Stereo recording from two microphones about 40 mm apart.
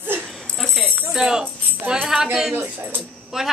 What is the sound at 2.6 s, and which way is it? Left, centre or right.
Speech, right.